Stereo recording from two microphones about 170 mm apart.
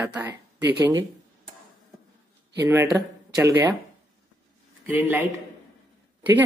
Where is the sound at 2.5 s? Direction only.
15° right (ahead or behind).